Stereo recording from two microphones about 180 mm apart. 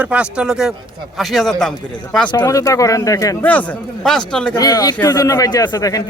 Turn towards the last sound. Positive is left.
turn(degrees=20)  # may be behind; listen again after turning